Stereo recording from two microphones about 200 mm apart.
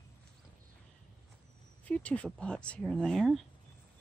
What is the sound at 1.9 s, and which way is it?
Speech, 5° left (ahead or behind).